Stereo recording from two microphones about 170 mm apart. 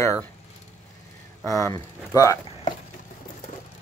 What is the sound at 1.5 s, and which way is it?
Speech, 20° left (ahead or behind).